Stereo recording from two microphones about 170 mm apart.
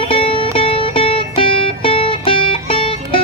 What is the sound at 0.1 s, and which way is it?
Music, 30° left (ahead or behind).